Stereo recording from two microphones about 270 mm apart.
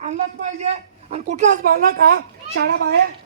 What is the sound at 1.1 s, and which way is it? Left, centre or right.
A woman's voice, right.